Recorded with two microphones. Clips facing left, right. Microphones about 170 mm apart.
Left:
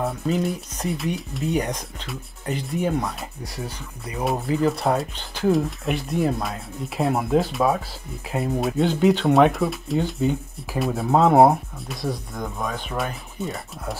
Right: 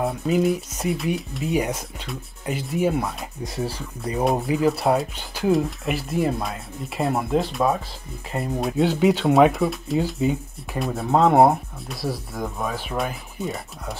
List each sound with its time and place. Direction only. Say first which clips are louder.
0.0 s speech: right 3 dB; centre (ahead or behind)
3.5 s speech: right 7 dB; 30° right (ahead or behind)
4.5 s speech: left 2 dB; 5° right (ahead or behind)